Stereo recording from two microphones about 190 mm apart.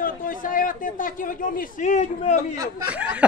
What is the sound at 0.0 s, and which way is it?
Speech, 45° left (ahead or behind).